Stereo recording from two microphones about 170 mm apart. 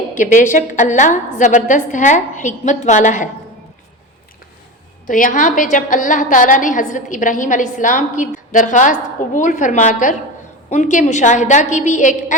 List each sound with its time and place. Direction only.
0.1 s a woman's voice: 45° left (ahead or behind)
5.0 s a woman's voice: 50° left (ahead or behind)